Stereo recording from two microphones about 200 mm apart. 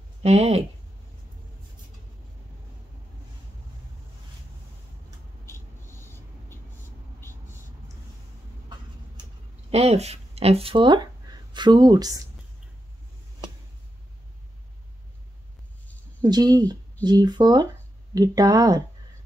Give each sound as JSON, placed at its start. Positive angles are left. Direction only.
{"t": 0.2, "sound": "speech", "side_deg": -35}
{"t": 5.4, "sound": "vehicle", "side_deg": 10}
{"t": 9.7, "sound": "speech", "side_deg": -30}
{"t": 16.2, "sound": "speech", "side_deg": -20}